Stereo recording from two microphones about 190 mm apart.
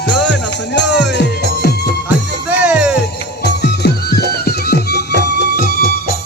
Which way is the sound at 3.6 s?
55° left (ahead or behind).